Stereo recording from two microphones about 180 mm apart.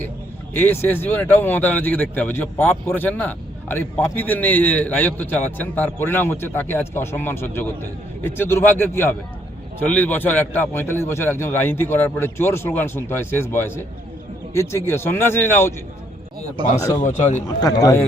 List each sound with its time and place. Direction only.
0.5 s speech: 10° left (ahead or behind)
17.0 s speech: 40° left (ahead or behind)
17.6 s a man's voice: 20° left (ahead or behind)